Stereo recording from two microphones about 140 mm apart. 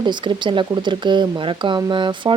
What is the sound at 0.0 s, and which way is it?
Speech, 35° right (ahead or behind).